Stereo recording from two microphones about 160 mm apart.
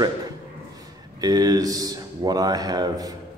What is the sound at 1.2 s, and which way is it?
A man's voice, 25° right (ahead or behind).